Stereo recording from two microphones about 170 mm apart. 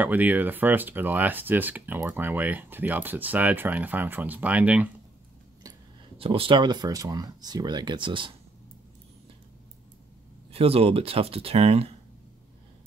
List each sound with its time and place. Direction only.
0.0 s speech: 10° right (ahead or behind)
6.1 s speech: 35° right (ahead or behind)
10.5 s speech: 35° right (ahead or behind)